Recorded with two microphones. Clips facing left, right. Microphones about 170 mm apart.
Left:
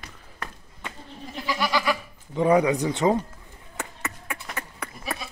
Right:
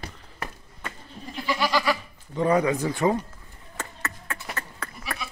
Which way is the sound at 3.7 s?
10° left (ahead or behind).